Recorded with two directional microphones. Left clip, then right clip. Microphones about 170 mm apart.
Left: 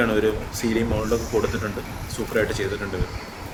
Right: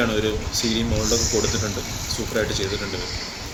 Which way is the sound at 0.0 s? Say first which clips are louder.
Left 1 dB; 40° left (ahead or behind).